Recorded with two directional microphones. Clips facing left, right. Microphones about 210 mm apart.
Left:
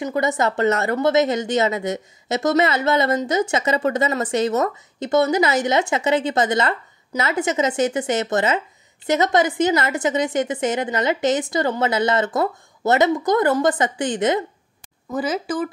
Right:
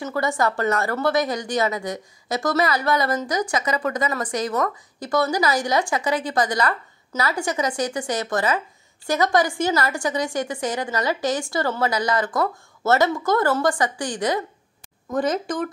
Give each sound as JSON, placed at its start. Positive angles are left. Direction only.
{"t": 0.0, "sound": "speech", "side_deg": 20}
{"t": 15.0, "sound": "speech", "side_deg": 5}